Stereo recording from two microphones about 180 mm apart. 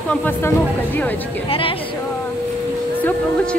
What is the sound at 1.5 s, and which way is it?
Speech, 30° left (ahead or behind).